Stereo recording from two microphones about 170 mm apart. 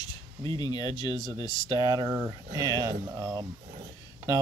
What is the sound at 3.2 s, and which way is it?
Speech, 20° right (ahead or behind).